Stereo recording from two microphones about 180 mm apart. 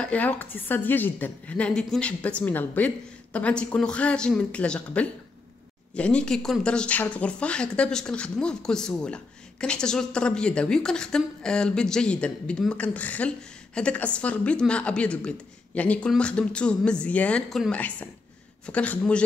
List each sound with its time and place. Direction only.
0.0 s a woman's voice: 10° left (ahead or behind)